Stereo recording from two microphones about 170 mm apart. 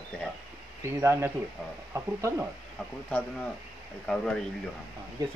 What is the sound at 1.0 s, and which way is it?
Speech, 15° right (ahead or behind).